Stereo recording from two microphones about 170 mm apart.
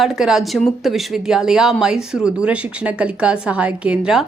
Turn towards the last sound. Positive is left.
turn(degrees=-5)  # may be behind; listen again after turning